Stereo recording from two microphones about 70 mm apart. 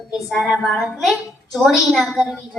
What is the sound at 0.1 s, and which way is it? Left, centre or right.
A woman's voice, centre.